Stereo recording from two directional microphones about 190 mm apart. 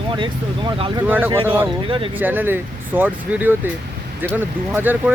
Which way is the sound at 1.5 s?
25° right (ahead or behind).